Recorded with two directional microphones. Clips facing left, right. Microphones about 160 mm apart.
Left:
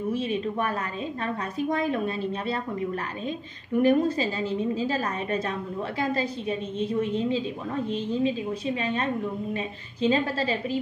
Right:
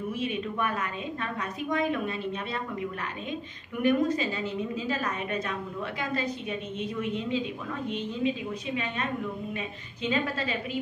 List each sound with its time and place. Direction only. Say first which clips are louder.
0.1 s a woman's voice: left 4 dB; 30° left (ahead or behind)